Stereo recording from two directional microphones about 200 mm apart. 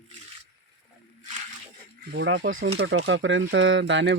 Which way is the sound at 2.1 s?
65° right (ahead or behind).